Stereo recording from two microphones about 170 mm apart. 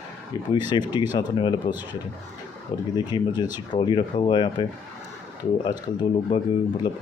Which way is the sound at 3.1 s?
25° left (ahead or behind).